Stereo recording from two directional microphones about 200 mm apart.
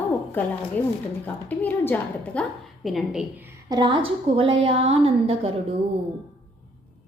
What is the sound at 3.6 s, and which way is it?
A woman's voice, 20° right (ahead or behind).